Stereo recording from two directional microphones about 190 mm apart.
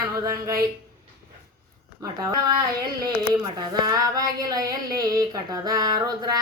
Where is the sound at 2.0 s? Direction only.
20° right (ahead or behind).